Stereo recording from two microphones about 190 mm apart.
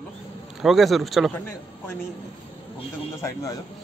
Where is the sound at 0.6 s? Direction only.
Centre (ahead or behind).